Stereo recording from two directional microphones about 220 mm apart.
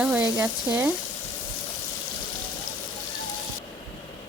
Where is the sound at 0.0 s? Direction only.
5° right (ahead or behind).